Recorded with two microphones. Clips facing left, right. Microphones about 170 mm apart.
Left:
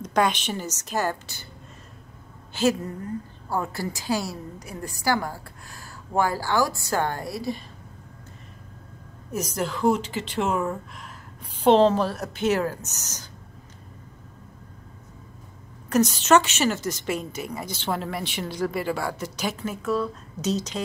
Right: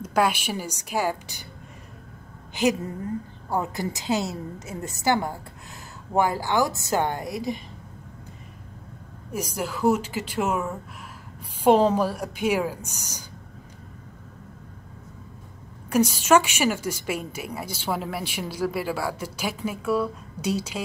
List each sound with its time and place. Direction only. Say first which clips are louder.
0.0 s a woman's voice: even; 5° right (ahead or behind)
2.6 s a woman's voice: even; 15° right (ahead or behind)
9.3 s a woman's voice: left 2 dB; 10° right (ahead or behind)
15.9 s a woman's voice: even; 10° right (ahead or behind)